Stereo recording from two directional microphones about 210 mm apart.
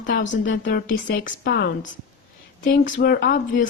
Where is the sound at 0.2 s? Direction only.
60° left (ahead or behind).